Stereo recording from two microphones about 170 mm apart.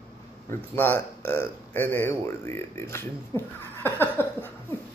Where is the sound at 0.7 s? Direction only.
10° left (ahead or behind).